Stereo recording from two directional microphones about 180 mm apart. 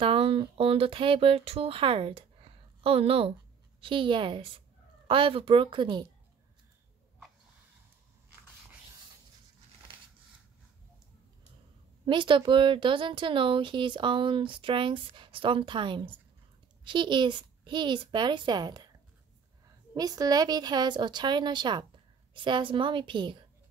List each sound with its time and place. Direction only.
0.0 s a woman's voice: 30° right (ahead or behind)
12.1 s speech: 25° right (ahead or behind)
19.9 s speech: 20° right (ahead or behind)